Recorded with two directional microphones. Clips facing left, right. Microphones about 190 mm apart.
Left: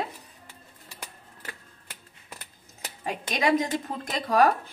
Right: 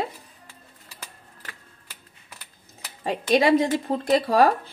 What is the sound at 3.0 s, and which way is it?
A woman's voice, 35° right (ahead or behind).